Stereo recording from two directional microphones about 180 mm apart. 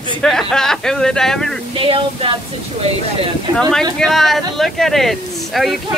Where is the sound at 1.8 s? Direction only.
30° right (ahead or behind).